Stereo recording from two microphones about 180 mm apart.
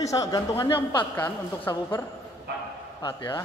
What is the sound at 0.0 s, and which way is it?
A man's voice, 20° left (ahead or behind).